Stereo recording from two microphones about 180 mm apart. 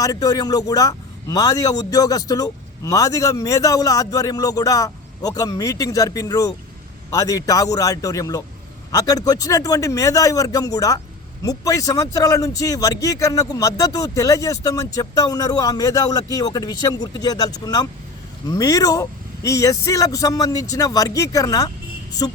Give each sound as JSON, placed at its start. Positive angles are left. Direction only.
{"t": 0.0, "sound": "a man's voice", "side_deg": 20}